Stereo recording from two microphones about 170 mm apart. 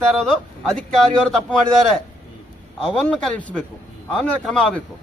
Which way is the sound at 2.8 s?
5° left (ahead or behind).